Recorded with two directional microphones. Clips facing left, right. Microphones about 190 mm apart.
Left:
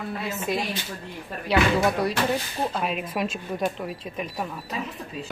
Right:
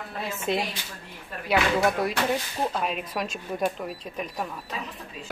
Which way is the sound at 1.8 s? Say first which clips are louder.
Left 1 dB; centre (ahead or behind).